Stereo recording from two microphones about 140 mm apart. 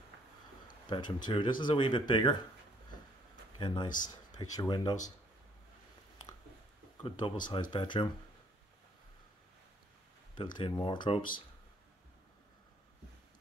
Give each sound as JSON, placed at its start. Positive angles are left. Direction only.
{"t": 0.8, "sound": "speech", "side_deg": 35}
{"t": 3.5, "sound": "speech", "side_deg": 35}
{"t": 3.9, "sound": "speech", "side_deg": 65}
{"t": 4.4, "sound": "speech", "side_deg": 30}
{"t": 7.0, "sound": "speech", "side_deg": 35}
{"t": 10.3, "sound": "speech", "side_deg": 35}